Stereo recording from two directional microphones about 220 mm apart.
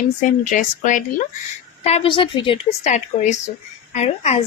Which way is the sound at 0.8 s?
35° left (ahead or behind).